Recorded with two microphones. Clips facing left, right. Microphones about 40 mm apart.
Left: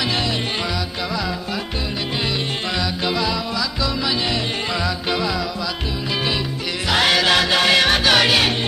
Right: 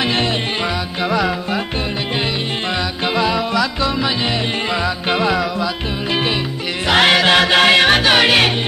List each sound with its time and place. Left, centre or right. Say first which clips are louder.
1.1 s music: right 8 dB; right
3.2 s music: right 9 dB; right
5.1 s music: right 5 dB; right
6.9 s music: right 4 dB; right